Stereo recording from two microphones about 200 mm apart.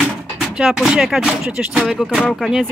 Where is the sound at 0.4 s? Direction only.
Centre (ahead or behind).